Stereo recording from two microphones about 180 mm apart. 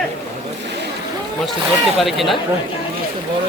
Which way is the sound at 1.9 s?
Centre (ahead or behind).